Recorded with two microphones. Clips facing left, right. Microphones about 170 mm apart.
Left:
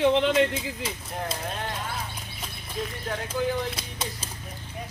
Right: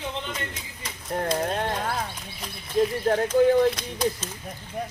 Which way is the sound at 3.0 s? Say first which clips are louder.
Right 8 dB; 50° right (ahead or behind).